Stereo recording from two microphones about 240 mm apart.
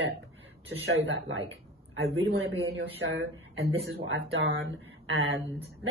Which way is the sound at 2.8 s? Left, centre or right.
Right.